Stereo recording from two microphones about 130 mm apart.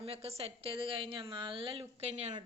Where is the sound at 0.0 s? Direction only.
50° right (ahead or behind).